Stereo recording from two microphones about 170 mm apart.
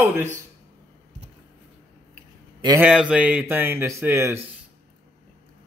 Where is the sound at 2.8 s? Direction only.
5° right (ahead or behind).